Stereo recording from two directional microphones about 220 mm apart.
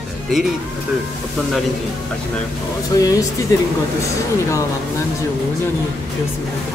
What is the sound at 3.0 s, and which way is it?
Speech, 15° left (ahead or behind).